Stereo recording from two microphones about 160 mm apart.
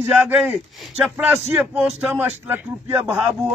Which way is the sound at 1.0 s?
5° right (ahead or behind).